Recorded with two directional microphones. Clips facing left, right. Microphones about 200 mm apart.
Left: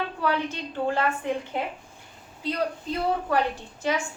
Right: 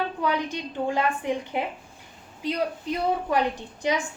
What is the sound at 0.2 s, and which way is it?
A woman's voice, 15° right (ahead or behind).